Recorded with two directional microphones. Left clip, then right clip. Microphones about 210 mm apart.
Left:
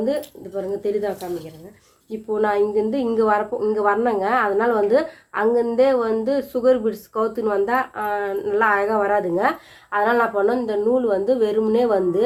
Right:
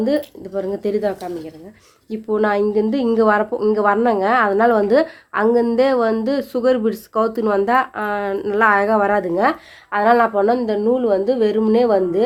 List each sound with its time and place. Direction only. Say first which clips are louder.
0.5 s a woman's voice: right 2 dB; 50° right (ahead or behind)